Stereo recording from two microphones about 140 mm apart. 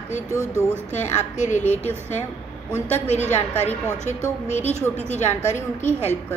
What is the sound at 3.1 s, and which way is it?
A woman's voice, 55° left (ahead or behind).